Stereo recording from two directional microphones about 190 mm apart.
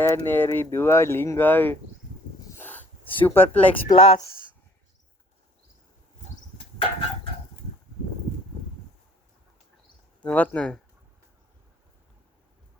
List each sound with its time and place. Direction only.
0.0 s speech: 10° left (ahead or behind)
2.5 s a sound: 10° left (ahead or behind)
3.2 s speech: 10° left (ahead or behind)
3.8 s speech: 30° left (ahead or behind)
10.2 s speech: 5° left (ahead or behind)